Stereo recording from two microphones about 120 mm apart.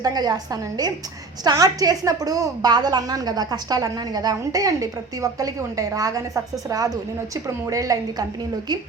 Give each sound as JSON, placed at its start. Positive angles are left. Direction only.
{"t": 0.0, "sound": "a woman's voice", "side_deg": -35}